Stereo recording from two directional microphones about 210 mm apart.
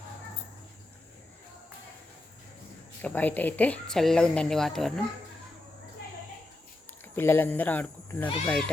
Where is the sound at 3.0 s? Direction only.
10° left (ahead or behind).